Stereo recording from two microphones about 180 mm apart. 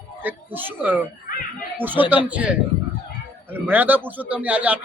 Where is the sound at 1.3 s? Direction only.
50° left (ahead or behind).